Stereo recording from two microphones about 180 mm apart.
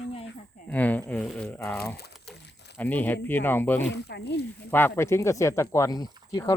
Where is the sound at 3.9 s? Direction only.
70° left (ahead or behind).